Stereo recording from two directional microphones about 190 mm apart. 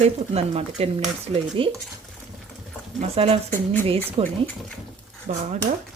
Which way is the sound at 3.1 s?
30° right (ahead or behind).